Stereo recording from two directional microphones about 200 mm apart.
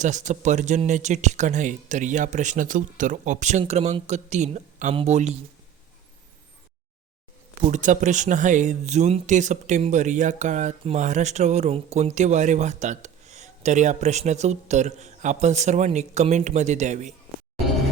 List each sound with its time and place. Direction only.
0.0 s speech: 35° right (ahead or behind)
7.6 s speech: 40° right (ahead or behind)